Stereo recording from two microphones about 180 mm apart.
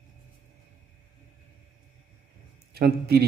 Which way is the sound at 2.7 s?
60° right (ahead or behind).